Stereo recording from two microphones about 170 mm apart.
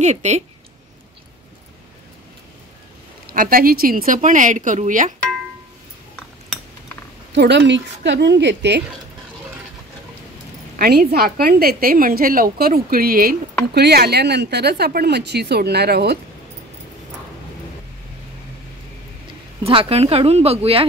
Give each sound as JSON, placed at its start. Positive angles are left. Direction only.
{"t": 0.0, "sound": "speech", "side_deg": -40}
{"t": 3.3, "sound": "speech", "side_deg": -60}
{"t": 6.5, "sound": "a sound", "side_deg": 0}
{"t": 7.3, "sound": "speech", "side_deg": -90}
{"t": 10.8, "sound": "a woman's voice", "side_deg": -65}
{"t": 13.7, "sound": "speech", "side_deg": -70}
{"t": 19.6, "sound": "speech", "side_deg": -35}